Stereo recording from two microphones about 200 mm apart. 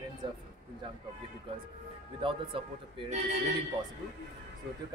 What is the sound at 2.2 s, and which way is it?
A man's voice, 25° right (ahead or behind).